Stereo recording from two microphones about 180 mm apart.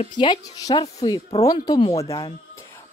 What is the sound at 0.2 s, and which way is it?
A woman's voice, 25° left (ahead or behind).